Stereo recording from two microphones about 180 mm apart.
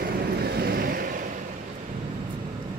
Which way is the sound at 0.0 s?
60° right (ahead or behind).